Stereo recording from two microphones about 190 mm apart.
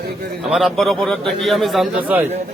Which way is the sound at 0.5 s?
Centre (ahead or behind).